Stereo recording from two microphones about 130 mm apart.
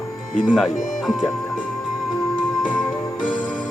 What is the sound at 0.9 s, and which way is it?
Speech, centre (ahead or behind).